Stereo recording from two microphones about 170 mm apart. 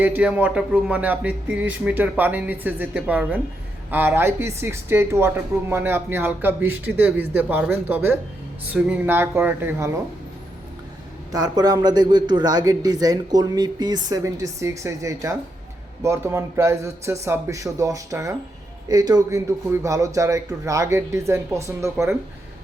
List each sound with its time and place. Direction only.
0.0 s speech: 10° right (ahead or behind)
11.3 s a man's voice: 25° right (ahead or behind)